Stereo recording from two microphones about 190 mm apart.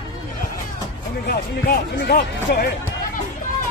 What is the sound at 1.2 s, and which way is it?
Speech, 55° left (ahead or behind).